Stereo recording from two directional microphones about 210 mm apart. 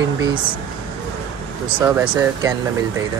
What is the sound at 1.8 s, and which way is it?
Speech, 10° right (ahead or behind).